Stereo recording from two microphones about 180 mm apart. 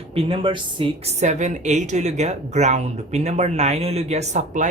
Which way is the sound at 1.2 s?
40° right (ahead or behind).